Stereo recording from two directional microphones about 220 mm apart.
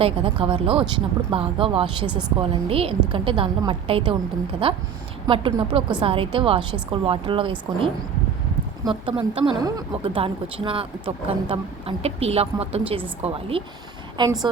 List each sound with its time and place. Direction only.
0.0 s a woman's voice: 25° right (ahead or behind)
8.8 s a woman's voice: 20° right (ahead or behind)